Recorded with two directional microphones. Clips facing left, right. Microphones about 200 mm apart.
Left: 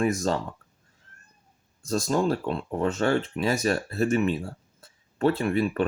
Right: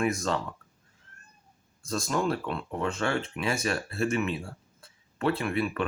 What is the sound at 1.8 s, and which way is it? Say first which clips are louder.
Speech: left 4 dB; 35° left (ahead or behind).